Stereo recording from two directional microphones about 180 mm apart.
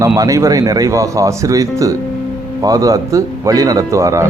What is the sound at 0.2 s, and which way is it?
Speech, 20° right (ahead or behind).